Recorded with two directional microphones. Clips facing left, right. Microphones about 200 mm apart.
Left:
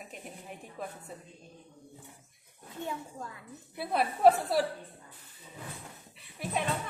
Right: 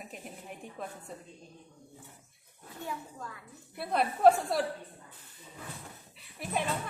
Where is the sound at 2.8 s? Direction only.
25° left (ahead or behind).